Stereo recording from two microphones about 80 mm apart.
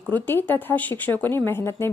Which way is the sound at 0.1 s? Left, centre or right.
Left.